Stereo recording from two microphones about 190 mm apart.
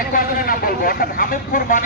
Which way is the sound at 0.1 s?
50° left (ahead or behind).